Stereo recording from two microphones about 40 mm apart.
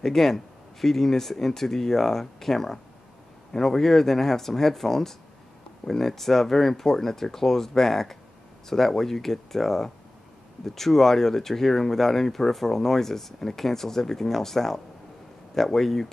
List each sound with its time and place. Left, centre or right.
0.0 s speech: centre